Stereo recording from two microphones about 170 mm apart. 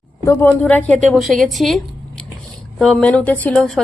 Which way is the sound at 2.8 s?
5° left (ahead or behind).